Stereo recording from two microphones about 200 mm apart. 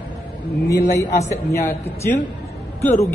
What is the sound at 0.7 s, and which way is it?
Speech, 15° left (ahead or behind).